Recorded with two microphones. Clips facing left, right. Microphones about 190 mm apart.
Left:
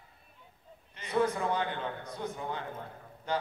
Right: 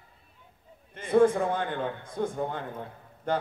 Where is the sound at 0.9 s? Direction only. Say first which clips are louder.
Right 8 dB; 50° right (ahead or behind).